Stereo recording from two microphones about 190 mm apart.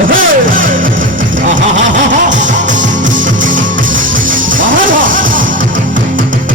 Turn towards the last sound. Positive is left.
turn(degrees=-45)  # may be behind; listen again after turning